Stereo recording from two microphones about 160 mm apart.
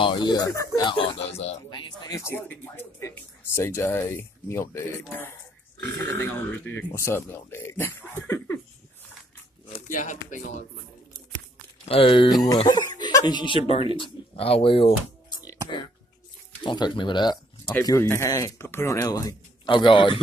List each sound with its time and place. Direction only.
0.0 s speech: 30° left (ahead or behind); by 8.5 s 15° left (ahead or behind)
9.8 s speech: 55° left (ahead or behind)
11.9 s a man's voice: 35° left (ahead or behind)
12.4 s speech: 25° left (ahead or behind)
16.6 s speech: 30° left (ahead or behind)
18.0 s a man's voice: 15° left (ahead or behind); by 20.2 s 30° left (ahead or behind)